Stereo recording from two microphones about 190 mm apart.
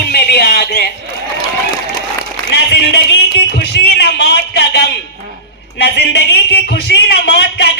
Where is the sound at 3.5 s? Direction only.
60° left (ahead or behind).